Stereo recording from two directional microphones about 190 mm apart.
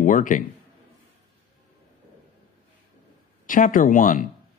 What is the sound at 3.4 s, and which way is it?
Speech, 45° left (ahead or behind).